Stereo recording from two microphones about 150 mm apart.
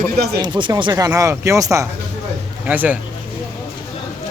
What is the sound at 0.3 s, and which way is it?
Speech, 30° right (ahead or behind).